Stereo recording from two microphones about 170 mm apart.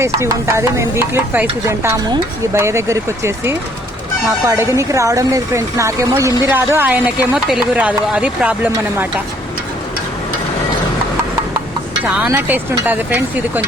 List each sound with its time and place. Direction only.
0.0 s speech: 15° right (ahead or behind)
12.3 s speech: 10° right (ahead or behind)